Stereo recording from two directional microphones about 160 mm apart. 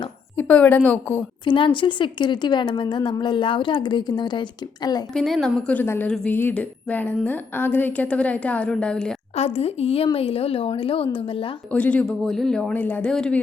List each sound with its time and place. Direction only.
0.3 s a woman's voice: 10° left (ahead or behind)
1.5 s a woman's voice: 30° left (ahead or behind)
5.1 s a woman's voice: centre (ahead or behind)
9.3 s a woman's voice: 40° left (ahead or behind)
11.7 s a woman's voice: 10° left (ahead or behind)